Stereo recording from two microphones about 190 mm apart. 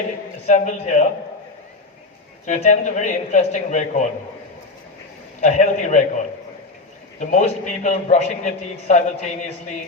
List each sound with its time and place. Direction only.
0.4 s a man's voice: 40° left (ahead or behind)
2.5 s a man's voice: 40° left (ahead or behind)
5.4 s a man's voice: 40° left (ahead or behind)
7.2 s a man's voice: 40° left (ahead or behind)